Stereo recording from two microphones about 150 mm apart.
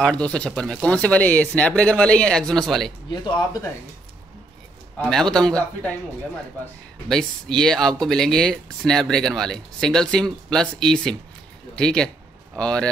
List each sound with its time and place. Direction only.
0.0 s speech: 5° left (ahead or behind)
3.1 s speech: 30° left (ahead or behind)
4.9 s speech: 5° left (ahead or behind)